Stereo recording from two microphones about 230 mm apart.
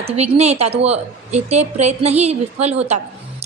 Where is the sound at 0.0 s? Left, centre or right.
Right.